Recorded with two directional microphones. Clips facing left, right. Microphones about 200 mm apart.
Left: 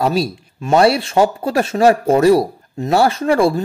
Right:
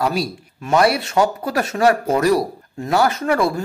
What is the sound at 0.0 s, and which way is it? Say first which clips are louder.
Speech: left 4 dB; 25° left (ahead or behind).